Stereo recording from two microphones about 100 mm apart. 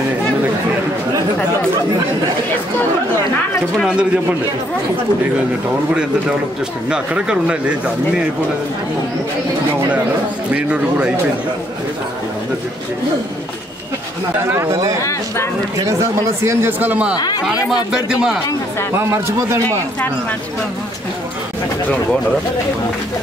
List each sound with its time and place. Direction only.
6.9 s speech: 10° right (ahead or behind)
10.5 s speech: 10° right (ahead or behind)
14.4 s speech: 25° right (ahead or behind)
16.8 s speech: 15° right (ahead or behind)
18.9 s speech: 30° right (ahead or behind)